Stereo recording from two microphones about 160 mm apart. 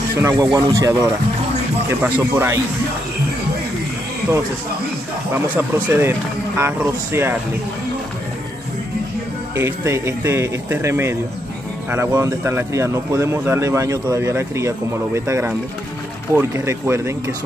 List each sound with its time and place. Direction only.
0.2 s speech: 20° right (ahead or behind)
5.3 s speech: 10° right (ahead or behind)
9.6 s speech: 15° right (ahead or behind)